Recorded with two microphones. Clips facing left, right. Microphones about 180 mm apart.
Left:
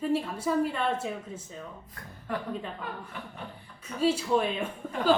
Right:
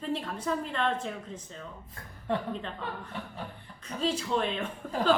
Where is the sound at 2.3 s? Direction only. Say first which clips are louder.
Right 3 dB; 25° right (ahead or behind).